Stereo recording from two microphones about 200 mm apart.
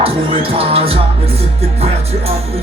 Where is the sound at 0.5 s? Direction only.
30° right (ahead or behind).